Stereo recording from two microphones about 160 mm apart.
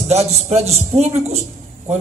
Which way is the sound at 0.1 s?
40° right (ahead or behind).